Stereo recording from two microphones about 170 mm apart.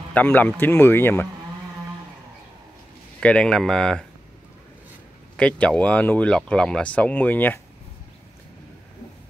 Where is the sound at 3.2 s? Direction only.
5° left (ahead or behind).